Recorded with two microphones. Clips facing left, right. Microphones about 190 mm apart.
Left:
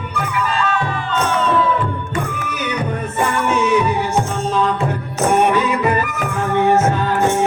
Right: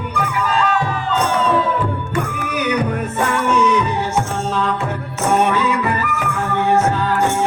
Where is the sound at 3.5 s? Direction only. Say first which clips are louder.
Left 1 dB; 5° left (ahead or behind).